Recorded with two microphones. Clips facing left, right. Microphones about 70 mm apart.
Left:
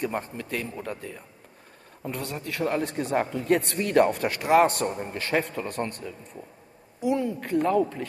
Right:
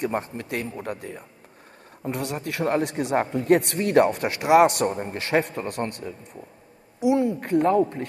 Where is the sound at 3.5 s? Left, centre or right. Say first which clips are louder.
Right 4 dB; right.